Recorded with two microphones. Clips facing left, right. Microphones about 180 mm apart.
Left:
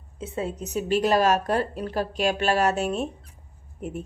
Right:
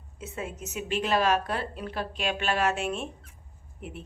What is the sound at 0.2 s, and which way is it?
A woman's voice, 30° left (ahead or behind).